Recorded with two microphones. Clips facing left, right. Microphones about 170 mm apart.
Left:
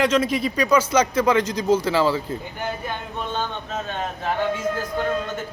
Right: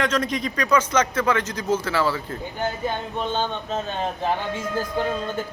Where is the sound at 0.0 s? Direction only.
5° left (ahead or behind).